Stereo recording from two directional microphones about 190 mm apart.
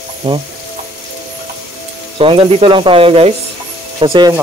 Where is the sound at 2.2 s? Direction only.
30° right (ahead or behind).